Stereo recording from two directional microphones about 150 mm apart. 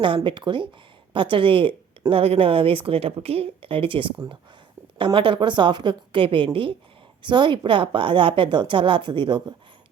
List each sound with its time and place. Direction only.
0.0 s a woman's voice: 35° right (ahead or behind)